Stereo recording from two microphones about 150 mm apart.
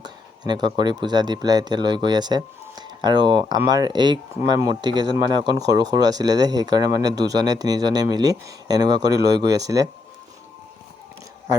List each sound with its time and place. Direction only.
0.0 s speech: 30° right (ahead or behind)